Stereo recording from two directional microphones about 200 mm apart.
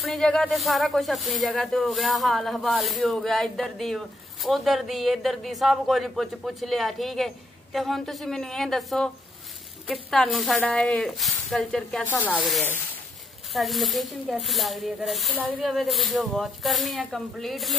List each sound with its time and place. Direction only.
0.0 s speech: centre (ahead or behind)
10.1 s speech: 5° left (ahead or behind)